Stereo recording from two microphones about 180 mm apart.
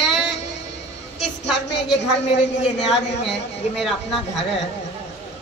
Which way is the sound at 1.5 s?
75° left (ahead or behind).